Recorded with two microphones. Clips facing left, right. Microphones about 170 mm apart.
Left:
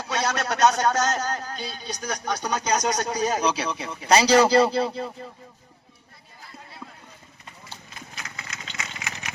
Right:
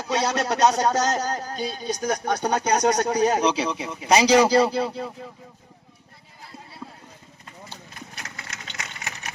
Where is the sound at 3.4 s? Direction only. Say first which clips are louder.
Right 3 dB; 20° right (ahead or behind).